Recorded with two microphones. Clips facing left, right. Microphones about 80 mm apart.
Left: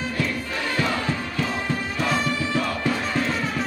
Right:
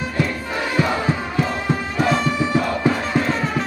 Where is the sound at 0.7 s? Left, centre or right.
Right.